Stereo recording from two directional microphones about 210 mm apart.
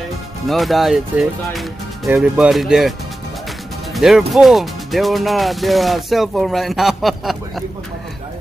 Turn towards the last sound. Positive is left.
turn(degrees=0)  # may be behind; listen again after turning